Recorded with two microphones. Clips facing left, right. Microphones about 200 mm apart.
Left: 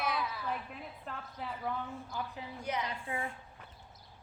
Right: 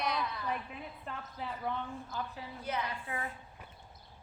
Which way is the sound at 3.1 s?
25° left (ahead or behind).